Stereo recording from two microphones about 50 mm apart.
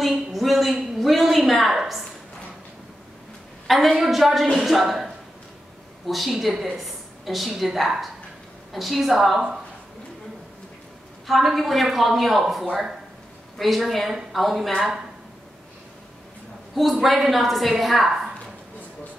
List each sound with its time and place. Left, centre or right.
0.1 s a sound: centre
3.6 s a woman's voice: centre
11.2 s a woman's voice: centre
16.7 s a woman's voice: centre